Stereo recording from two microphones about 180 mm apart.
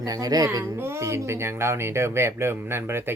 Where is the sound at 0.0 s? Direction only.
20° right (ahead or behind).